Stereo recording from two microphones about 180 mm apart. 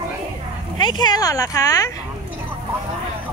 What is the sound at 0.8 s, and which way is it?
Speech, 20° left (ahead or behind).